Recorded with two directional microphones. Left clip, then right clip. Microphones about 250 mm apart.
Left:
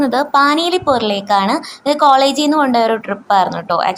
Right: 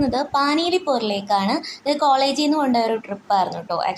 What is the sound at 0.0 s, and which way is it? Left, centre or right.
A woman's voice, centre.